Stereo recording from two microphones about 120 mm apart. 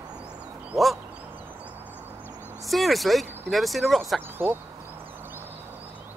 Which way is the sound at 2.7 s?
Centre (ahead or behind).